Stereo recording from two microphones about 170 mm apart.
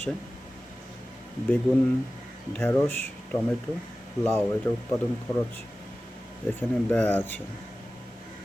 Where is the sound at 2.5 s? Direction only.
15° left (ahead or behind).